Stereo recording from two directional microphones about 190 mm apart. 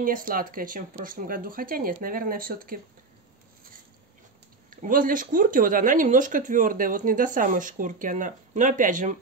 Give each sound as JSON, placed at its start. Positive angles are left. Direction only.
{"t": 0.0, "sound": "speech", "side_deg": -50}
{"t": 4.6, "sound": "speech", "side_deg": -45}